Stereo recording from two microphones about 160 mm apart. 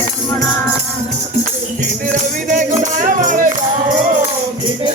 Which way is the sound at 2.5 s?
50° right (ahead or behind).